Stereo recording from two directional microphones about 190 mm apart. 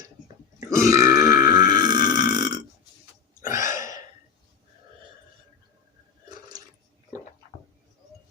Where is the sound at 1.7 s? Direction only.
20° right (ahead or behind).